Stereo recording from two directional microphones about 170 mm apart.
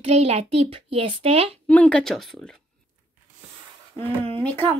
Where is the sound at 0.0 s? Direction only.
35° right (ahead or behind).